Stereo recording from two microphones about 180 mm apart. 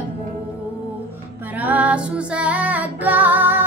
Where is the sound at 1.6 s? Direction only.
10° right (ahead or behind).